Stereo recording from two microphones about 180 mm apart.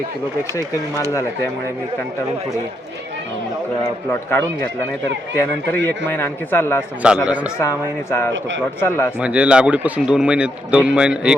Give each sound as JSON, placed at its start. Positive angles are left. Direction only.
{"t": 4.1, "sound": "a man's voice", "side_deg": 10}
{"t": 6.1, "sound": "a man's voice", "side_deg": 10}
{"t": 7.0, "sound": "speech", "side_deg": -5}
{"t": 7.6, "sound": "a man's voice", "side_deg": 15}
{"t": 8.3, "sound": "a man's voice", "side_deg": -90}
{"t": 8.8, "sound": "a man's voice", "side_deg": 15}
{"t": 9.1, "sound": "speech", "side_deg": -5}